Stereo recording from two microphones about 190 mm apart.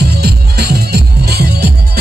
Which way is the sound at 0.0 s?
55° right (ahead or behind).